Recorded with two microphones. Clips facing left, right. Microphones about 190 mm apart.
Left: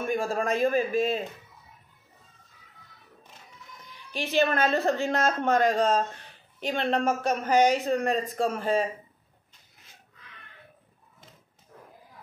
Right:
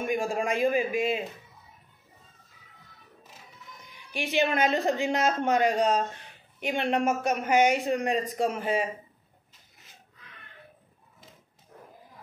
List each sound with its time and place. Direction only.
0.0 s a woman's voice: 15° right (ahead or behind)
4.1 s a woman's voice: 15° right (ahead or behind)
7.5 s speech: 35° left (ahead or behind)
7.8 s a woman's voice: 15° right (ahead or behind)